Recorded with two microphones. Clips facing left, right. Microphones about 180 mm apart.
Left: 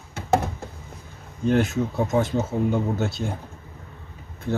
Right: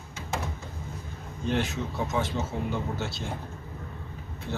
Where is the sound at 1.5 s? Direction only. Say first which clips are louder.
Left 7 dB; 50° left (ahead or behind).